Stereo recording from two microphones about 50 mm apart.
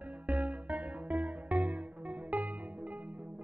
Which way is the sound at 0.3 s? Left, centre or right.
Right.